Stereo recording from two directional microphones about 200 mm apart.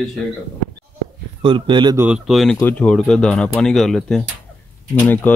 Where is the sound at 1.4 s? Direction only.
25° right (ahead or behind).